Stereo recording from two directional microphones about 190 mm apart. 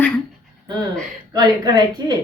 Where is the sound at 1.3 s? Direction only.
20° right (ahead or behind).